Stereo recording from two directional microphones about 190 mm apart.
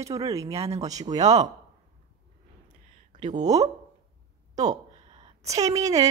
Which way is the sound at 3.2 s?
40° right (ahead or behind).